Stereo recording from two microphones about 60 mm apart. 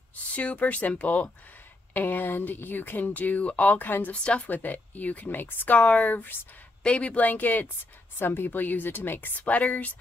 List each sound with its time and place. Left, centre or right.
0.3 s speech: left
2.0 s speech: left
4.1 s speech: centre
4.5 s speech: left
5.8 s speech: left
6.8 s speech: centre